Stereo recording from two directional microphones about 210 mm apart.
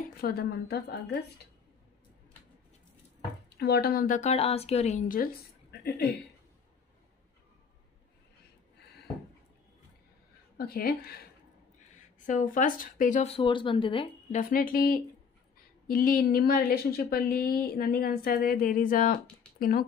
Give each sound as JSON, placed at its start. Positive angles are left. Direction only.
{"t": 0.2, "sound": "a woman's voice", "side_deg": 45}
{"t": 3.4, "sound": "speech", "side_deg": 50}
{"t": 4.2, "sound": "speech", "side_deg": 30}
{"t": 10.6, "sound": "a woman's voice", "side_deg": 45}
{"t": 12.2, "sound": "speech", "side_deg": 40}
{"t": 14.3, "sound": "a woman's voice", "side_deg": 45}